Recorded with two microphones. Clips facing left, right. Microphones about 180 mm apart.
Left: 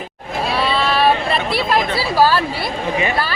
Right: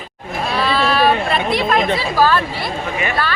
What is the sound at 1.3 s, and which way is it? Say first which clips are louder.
Speech: right 1 dB; 30° left (ahead or behind).